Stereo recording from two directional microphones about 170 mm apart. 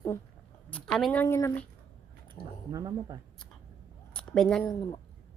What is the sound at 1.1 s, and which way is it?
Speech, 15° left (ahead or behind).